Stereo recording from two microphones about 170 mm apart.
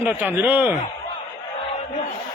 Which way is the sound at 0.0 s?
10° right (ahead or behind).